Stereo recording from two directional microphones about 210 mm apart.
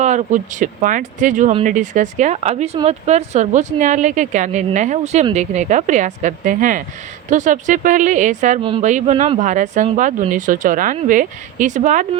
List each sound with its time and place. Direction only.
0.0 s a woman's voice: 35° right (ahead or behind)